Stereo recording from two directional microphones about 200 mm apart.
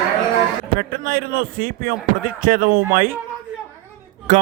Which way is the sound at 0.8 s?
50° right (ahead or behind).